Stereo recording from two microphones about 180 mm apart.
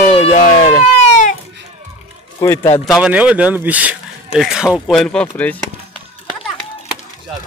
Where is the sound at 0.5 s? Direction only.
40° left (ahead or behind).